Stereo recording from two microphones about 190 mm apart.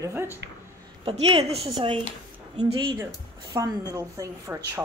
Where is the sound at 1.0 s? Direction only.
35° right (ahead or behind).